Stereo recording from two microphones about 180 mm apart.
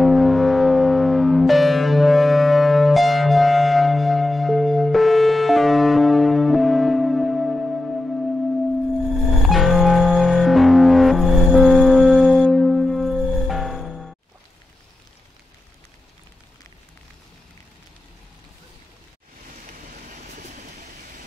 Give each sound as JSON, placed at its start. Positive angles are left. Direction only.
{"t": 0.0, "sound": "music", "side_deg": 0}
{"t": 19.7, "sound": "vehicle", "side_deg": -50}